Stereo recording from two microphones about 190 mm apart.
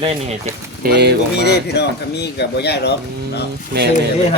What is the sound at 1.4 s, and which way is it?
Speech, 60° left (ahead or behind).